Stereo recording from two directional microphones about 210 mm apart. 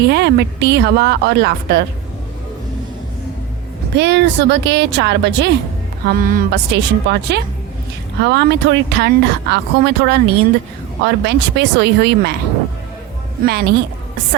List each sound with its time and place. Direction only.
0.0 s speech: 50° right (ahead or behind)
3.9 s a woman's voice: 55° right (ahead or behind)
6.1 s speech: 40° right (ahead or behind)
13.4 s speech: 50° right (ahead or behind)